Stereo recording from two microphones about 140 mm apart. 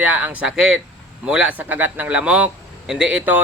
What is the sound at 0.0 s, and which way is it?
A man's voice, 10° right (ahead or behind).